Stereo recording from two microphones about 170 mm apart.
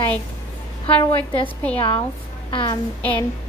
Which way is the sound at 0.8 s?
30° left (ahead or behind).